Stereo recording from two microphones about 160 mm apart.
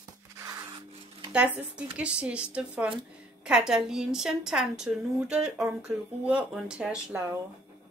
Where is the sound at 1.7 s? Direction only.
5° right (ahead or behind).